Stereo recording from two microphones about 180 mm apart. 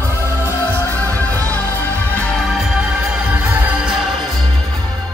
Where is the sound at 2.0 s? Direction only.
10° left (ahead or behind).